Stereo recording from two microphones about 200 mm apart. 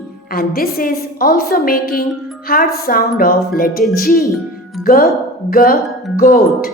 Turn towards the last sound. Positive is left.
turn(degrees=45)  # may be behind; listen again after turning